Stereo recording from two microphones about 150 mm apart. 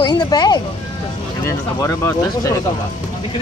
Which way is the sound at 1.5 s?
15° left (ahead or behind).